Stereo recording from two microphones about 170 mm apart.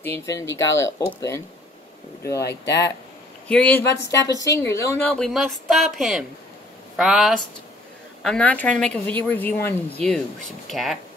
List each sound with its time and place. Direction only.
0.0 s a woman's voice: 15° left (ahead or behind)
2.4 s speech: 85° left
3.4 s a woman's voice: 5° left (ahead or behind)
4.4 s a woman's voice: 20° left (ahead or behind)
5.1 s a woman's voice: centre (ahead or behind)